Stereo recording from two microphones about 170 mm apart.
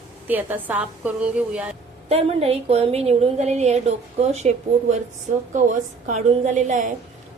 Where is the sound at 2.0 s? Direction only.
35° right (ahead or behind).